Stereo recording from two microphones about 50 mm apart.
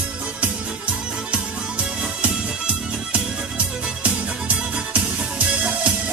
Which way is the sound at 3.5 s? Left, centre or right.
Right.